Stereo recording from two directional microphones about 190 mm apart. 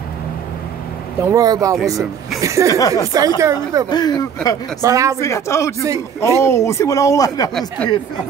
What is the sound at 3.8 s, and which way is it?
Speech, 20° left (ahead or behind).